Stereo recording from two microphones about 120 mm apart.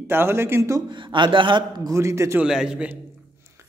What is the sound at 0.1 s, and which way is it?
Speech, 20° right (ahead or behind).